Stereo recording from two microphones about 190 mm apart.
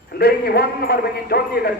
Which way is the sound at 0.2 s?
55° left (ahead or behind).